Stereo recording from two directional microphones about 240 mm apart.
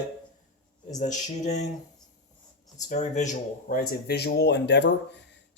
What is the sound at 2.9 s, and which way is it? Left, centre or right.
Speech, left.